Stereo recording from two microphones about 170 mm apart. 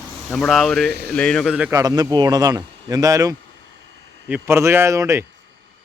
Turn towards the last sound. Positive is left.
turn(degrees=-15)  # may be behind; listen again after turning